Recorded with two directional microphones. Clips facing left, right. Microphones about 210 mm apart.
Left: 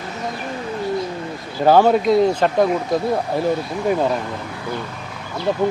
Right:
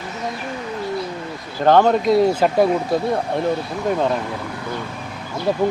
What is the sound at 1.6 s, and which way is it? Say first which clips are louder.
Speech: left 1 dB; 5° left (ahead or behind).